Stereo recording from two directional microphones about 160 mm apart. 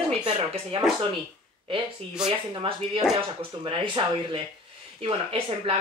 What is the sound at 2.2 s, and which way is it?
Speech, 30° right (ahead or behind).